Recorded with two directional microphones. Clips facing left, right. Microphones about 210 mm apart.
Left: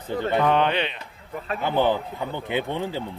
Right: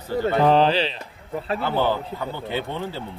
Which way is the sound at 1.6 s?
15° left (ahead or behind).